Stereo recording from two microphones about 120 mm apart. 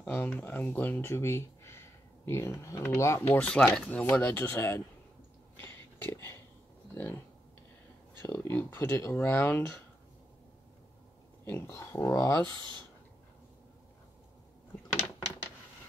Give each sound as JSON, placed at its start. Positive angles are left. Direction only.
{"t": 0.0, "sound": "speech", "side_deg": 10}
{"t": 5.6, "sound": "a sound", "side_deg": 20}
{"t": 6.9, "sound": "speech", "side_deg": 20}
{"t": 8.2, "sound": "speech", "side_deg": 20}
{"t": 11.4, "sound": "speech", "side_deg": 20}